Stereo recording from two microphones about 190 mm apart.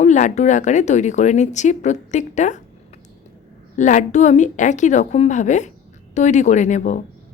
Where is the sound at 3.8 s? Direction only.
40° left (ahead or behind).